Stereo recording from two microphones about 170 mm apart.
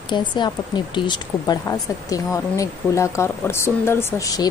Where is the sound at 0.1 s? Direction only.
25° left (ahead or behind).